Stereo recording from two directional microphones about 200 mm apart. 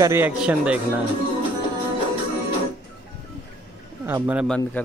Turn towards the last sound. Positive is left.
turn(degrees=-10)  # may be behind; listen again after turning